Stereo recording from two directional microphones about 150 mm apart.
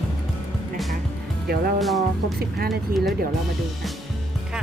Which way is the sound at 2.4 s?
90° right.